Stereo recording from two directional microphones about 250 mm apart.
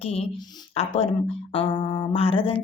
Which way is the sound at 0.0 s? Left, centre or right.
Left.